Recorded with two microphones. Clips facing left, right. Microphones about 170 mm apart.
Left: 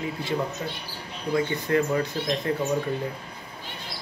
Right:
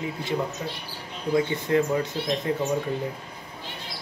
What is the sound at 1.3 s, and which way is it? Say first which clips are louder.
Speech: right 1 dB; 20° right (ahead or behind).